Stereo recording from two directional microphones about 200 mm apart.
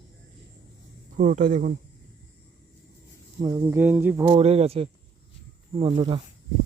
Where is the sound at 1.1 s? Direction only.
40° right (ahead or behind).